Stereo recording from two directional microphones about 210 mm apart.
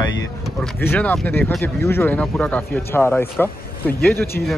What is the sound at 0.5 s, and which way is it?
Speech, 10° left (ahead or behind).